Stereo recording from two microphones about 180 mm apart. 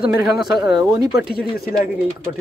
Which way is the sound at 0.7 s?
20° right (ahead or behind).